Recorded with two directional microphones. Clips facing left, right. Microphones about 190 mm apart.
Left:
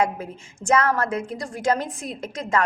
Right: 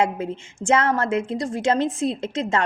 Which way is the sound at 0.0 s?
25° right (ahead or behind).